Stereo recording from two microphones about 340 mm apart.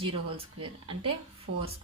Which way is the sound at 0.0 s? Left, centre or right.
Centre.